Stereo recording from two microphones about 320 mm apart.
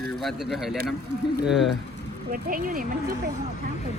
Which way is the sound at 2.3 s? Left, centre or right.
Right.